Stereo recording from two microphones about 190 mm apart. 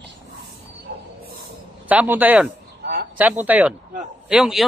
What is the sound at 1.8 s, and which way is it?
A man's voice, 10° right (ahead or behind).